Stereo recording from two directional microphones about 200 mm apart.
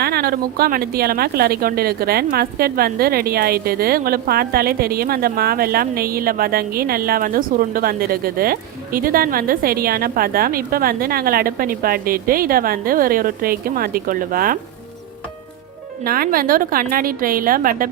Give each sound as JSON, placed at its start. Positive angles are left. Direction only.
{"t": 0.0, "sound": "a woman's voice", "side_deg": -50}
{"t": 16.0, "sound": "a woman's voice", "side_deg": -45}